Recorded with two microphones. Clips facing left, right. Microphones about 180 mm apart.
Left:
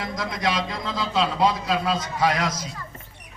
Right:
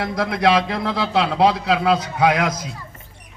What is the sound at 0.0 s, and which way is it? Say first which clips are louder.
A man's voice: right 7 dB; 65° right (ahead or behind).